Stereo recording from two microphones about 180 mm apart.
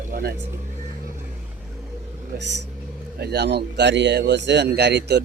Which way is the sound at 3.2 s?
65° right (ahead or behind).